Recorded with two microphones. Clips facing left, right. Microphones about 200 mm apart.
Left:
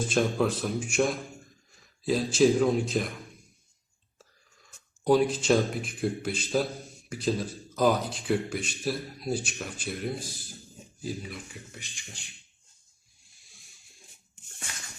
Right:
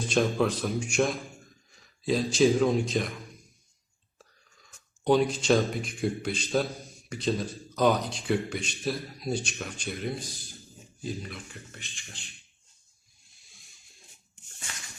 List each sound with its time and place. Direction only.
0.0 s speech: centre (ahead or behind)
5.0 s speech: centre (ahead or behind)